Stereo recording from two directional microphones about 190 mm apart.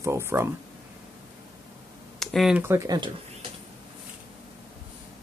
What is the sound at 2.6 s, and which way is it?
Speech, 15° right (ahead or behind).